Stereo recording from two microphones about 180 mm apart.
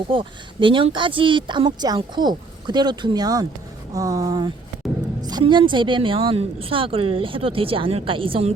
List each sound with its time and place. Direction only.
0.1 s a woman's voice: 30° right (ahead or behind)